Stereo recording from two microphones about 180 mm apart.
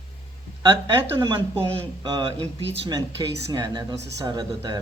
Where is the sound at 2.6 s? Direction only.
90° right.